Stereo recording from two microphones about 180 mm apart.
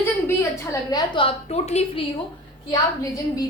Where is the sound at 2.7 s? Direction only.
20° left (ahead or behind).